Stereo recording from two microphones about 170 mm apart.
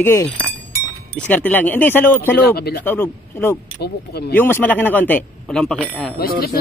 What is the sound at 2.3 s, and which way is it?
Speech, 70° left (ahead or behind).